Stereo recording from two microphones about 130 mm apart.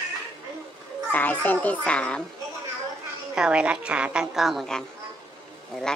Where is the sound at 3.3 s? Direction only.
10° right (ahead or behind).